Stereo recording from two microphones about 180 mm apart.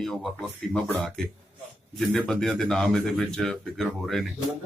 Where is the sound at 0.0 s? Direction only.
Centre (ahead or behind).